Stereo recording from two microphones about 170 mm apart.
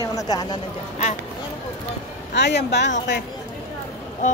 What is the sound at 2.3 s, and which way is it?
Speech, 90° left.